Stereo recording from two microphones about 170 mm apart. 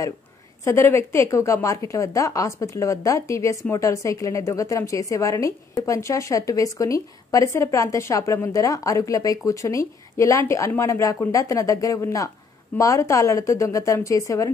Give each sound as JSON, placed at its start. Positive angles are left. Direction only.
{"t": 0.7, "sound": "a woman's voice", "side_deg": 15}